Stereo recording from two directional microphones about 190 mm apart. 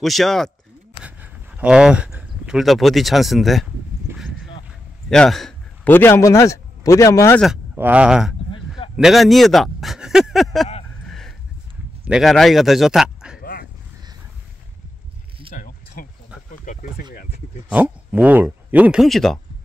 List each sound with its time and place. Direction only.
0.0 s speech: centre (ahead or behind)
4.1 s horse: centre (ahead or behind)
4.6 s a man's voice: centre (ahead or behind)
7.7 s speech: 10° right (ahead or behind)
8.5 s a sound: 25° left (ahead or behind)
8.9 s speech: centre (ahead or behind)
11.1 s a sound: centre (ahead or behind)
12.0 s speech: centre (ahead or behind)
13.4 s dog: 50° left (ahead or behind)
15.5 s a sound: 45° left (ahead or behind)
17.6 s speech: 10° right (ahead or behind)